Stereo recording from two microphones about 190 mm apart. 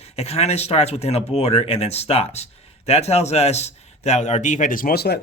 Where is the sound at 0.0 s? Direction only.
35° left (ahead or behind).